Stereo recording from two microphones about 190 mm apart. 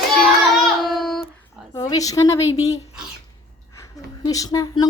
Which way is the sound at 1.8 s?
20° left (ahead or behind).